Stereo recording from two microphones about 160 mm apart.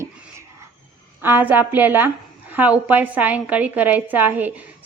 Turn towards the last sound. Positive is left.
turn(degrees=-10)  # may be behind; listen again after turning